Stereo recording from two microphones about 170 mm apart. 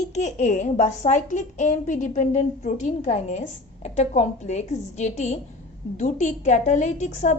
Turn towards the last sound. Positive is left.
turn(degrees=45)  # may be behind; listen again after turning